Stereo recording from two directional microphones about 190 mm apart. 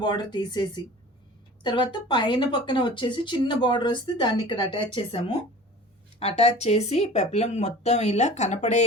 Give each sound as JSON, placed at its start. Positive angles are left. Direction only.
{"t": 0.0, "sound": "speech", "side_deg": 20}